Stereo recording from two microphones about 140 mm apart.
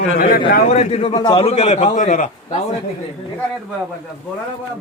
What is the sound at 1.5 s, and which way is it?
A man's voice, 50° left (ahead or behind).